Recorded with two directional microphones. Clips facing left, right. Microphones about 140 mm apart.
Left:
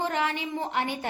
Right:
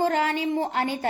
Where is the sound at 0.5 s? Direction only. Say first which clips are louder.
Right 4 dB; 35° right (ahead or behind).